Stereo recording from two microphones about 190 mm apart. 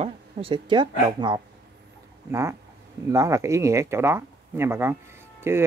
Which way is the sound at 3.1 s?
15° right (ahead or behind).